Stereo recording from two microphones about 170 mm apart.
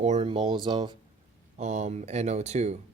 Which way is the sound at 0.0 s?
45° right (ahead or behind).